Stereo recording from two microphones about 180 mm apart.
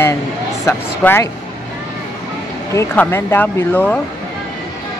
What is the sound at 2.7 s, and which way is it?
Speech, 15° left (ahead or behind).